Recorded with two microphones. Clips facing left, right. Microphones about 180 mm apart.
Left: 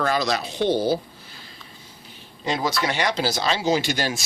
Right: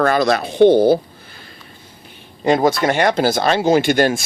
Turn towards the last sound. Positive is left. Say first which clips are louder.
# right 8 dB
turn(degrees=-55)  # may be behind; listen again after turning